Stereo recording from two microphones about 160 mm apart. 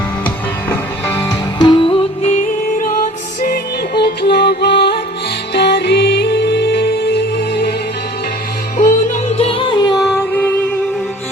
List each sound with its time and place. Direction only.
0.7 s music: 15° left (ahead or behind)
1.5 s music: 30° left (ahead or behind); by 7.7 s 85° left
9.3 s music: 35° left (ahead or behind); by 10.5 s 15° left (ahead or behind)